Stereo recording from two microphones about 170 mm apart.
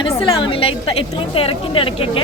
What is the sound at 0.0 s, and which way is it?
A woman's voice, 30° left (ahead or behind).